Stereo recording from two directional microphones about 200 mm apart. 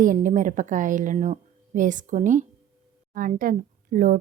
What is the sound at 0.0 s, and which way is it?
A woman's voice, 40° right (ahead or behind).